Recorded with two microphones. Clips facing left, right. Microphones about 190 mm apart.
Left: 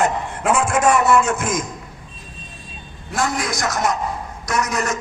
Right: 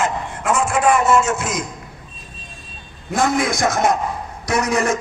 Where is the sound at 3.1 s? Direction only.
55° right (ahead or behind).